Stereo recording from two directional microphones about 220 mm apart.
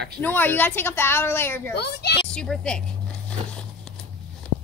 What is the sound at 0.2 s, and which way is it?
A child's voice, 10° left (ahead or behind).